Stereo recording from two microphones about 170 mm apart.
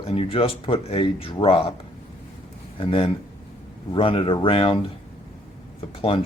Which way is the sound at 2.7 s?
30° left (ahead or behind).